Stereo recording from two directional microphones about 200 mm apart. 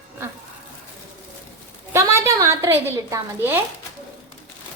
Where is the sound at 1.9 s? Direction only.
15° right (ahead or behind).